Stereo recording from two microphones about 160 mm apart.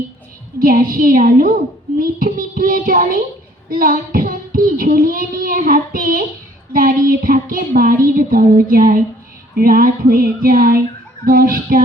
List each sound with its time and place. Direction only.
0.6 s child singing: 60° right (ahead or behind)